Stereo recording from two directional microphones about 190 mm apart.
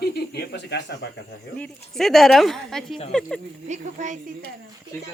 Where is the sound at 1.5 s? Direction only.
5° left (ahead or behind).